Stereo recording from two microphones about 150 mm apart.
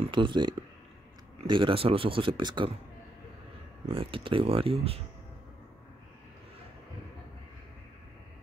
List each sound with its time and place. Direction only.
0.0 s speech: 35° right (ahead or behind)
3.9 s speech: 35° right (ahead or behind)